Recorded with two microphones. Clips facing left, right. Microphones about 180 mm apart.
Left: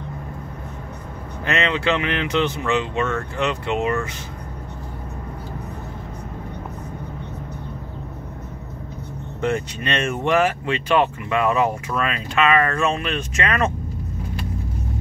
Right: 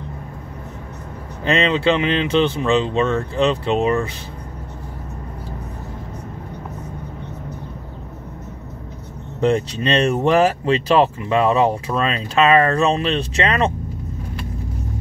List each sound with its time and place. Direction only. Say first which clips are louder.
1.4 s speech: right 5 dB; 30° right (ahead or behind)
9.4 s speech: right 5 dB; 35° right (ahead or behind)